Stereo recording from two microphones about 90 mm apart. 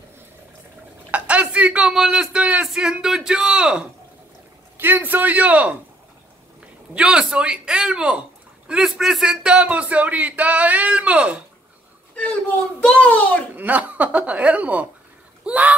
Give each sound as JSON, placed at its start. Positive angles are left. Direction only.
{"t": 1.1, "sound": "speech", "side_deg": -15}
{"t": 4.7, "sound": "a man's voice", "side_deg": -20}
{"t": 6.9, "sound": "speech", "side_deg": -10}
{"t": 12.2, "sound": "a child's voice", "side_deg": 10}
{"t": 13.6, "sound": "speech", "side_deg": -20}
{"t": 15.4, "sound": "a sound", "side_deg": -15}